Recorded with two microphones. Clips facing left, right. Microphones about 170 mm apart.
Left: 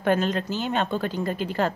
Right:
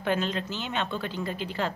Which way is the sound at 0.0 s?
50° left (ahead or behind).